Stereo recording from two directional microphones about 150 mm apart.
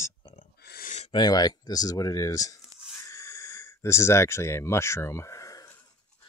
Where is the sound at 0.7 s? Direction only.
85° left.